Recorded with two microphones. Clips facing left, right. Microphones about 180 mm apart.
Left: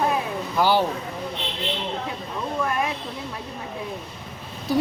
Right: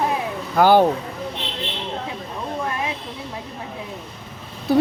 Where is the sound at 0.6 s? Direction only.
50° right (ahead or behind).